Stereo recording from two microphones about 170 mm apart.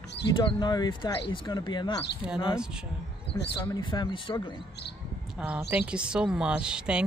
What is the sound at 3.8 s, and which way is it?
Speech, 30° left (ahead or behind).